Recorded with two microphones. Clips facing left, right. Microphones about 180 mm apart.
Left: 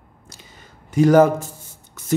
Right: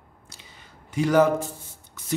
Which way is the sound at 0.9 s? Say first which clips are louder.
Left 6 dB; 45° left (ahead or behind).